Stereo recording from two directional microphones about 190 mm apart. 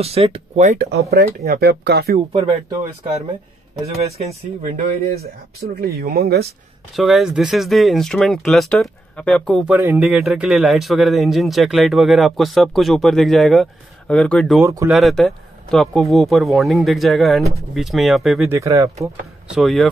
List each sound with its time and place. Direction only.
0.0 s speech: 30° right (ahead or behind)
1.4 s speech: 55° right (ahead or behind)
2.1 s speech: 25° right (ahead or behind)
4.6 s speech: 50° right (ahead or behind)
7.0 s a man's voice: centre (ahead or behind)
9.8 s a man's voice: 10° right (ahead or behind)
14.6 s speech: 15° right (ahead or behind)
14.9 s a man's voice: centre (ahead or behind)
18.5 s speech: 15° right (ahead or behind)
19.5 s a man's voice: centre (ahead or behind)